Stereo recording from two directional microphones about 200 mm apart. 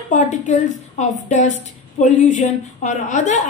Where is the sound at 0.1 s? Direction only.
40° left (ahead or behind).